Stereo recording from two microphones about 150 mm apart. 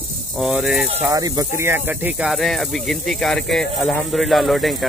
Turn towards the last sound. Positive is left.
turn(degrees=0)  # may be behind; listen again after turning